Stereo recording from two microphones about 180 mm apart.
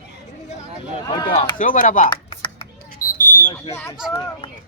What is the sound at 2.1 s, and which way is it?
Computer keyboard, 30° left (ahead or behind).